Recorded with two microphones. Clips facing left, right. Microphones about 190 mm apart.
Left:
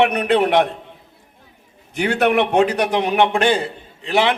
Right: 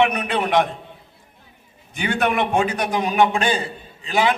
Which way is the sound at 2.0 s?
70° left (ahead or behind).